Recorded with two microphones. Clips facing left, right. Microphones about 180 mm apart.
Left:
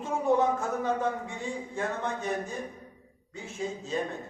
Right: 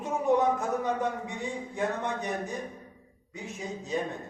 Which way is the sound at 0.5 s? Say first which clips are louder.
Even; 15° right (ahead or behind).